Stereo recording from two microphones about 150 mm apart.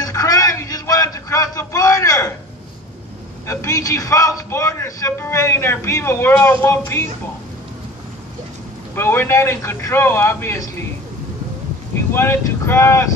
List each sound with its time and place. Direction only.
0.0 s a sound: 25° left (ahead or behind)
3.4 s a man's voice: 20° left (ahead or behind)
8.9 s a man's voice: 15° left (ahead or behind)
12.1 s a man's voice: 15° left (ahead or behind)